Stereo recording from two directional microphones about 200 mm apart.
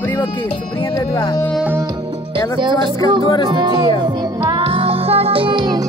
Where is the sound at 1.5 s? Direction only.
5° right (ahead or behind).